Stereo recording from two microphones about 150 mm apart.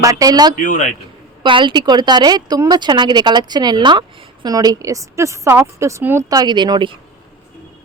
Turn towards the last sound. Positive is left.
turn(degrees=-30)  # may be behind; listen again after turning